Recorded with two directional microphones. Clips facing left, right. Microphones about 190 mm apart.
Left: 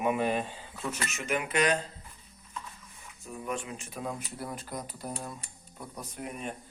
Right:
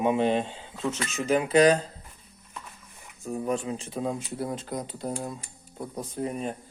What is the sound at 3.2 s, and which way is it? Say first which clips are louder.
Speech: right 7 dB; 35° right (ahead or behind).